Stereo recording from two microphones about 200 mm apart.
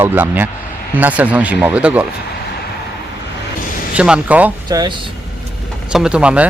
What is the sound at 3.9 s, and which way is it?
Speech, 5° right (ahead or behind).